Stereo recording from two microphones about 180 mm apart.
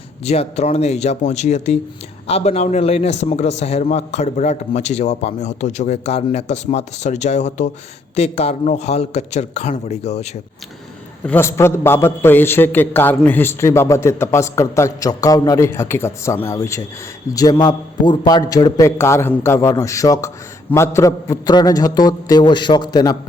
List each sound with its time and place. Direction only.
0.3 s a man's voice: 35° left (ahead or behind)
11.3 s a man's voice: 15° left (ahead or behind)